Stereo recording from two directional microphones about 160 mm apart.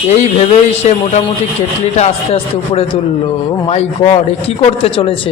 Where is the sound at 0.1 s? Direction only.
45° left (ahead or behind).